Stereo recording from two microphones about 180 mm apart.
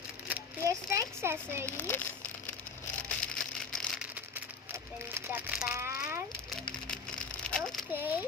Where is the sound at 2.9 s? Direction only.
5° left (ahead or behind); by 6.2 s 15° right (ahead or behind).